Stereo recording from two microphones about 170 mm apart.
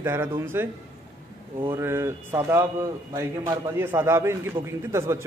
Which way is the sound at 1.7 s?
15° right (ahead or behind).